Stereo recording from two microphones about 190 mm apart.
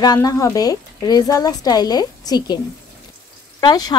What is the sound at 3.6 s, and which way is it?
Speech, 20° left (ahead or behind).